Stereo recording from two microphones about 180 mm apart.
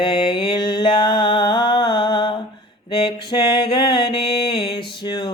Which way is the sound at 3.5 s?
25° left (ahead or behind).